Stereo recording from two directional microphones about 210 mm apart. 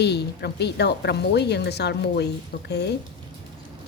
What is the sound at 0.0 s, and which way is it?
Speech, 50° left (ahead or behind).